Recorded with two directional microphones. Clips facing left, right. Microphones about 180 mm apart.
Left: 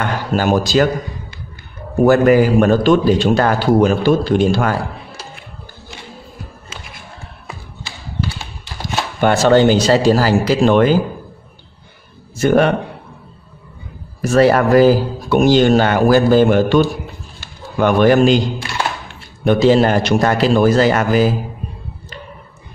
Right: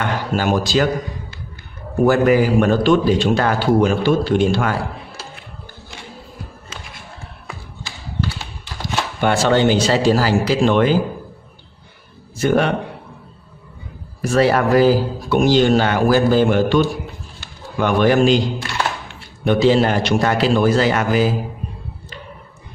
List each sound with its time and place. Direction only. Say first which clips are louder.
0.3 s speech: left 4 dB; 40° left (ahead or behind)
2.0 s a man's voice: left 3 dB; 50° left (ahead or behind)
9.2 s speech: left 4 dB; 45° left (ahead or behind)
12.4 s speech: left 4 dB; 50° left (ahead or behind)
14.3 s speech: left 4 dB; 45° left (ahead or behind)
19.4 s speech: left 3 dB; 45° left (ahead or behind)